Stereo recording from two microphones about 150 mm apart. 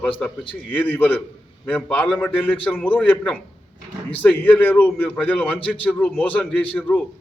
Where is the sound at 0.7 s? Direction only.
10° left (ahead or behind).